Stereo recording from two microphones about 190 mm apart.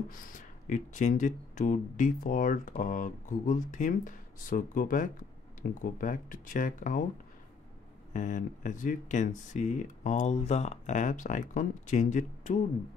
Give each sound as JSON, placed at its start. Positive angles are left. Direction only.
{"t": 0.1, "sound": "speech", "side_deg": 45}
{"t": 8.1, "sound": "speech", "side_deg": 40}